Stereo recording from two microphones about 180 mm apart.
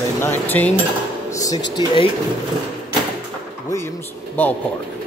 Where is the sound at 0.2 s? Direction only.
10° left (ahead or behind).